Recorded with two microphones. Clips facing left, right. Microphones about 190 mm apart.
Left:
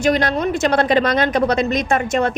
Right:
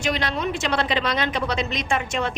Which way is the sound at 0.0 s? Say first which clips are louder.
Left 8 dB; 45° left (ahead or behind).